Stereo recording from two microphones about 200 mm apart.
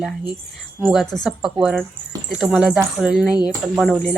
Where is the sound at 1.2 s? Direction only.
5° right (ahead or behind).